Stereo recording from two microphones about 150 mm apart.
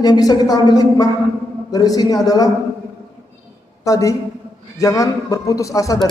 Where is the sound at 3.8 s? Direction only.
20° left (ahead or behind).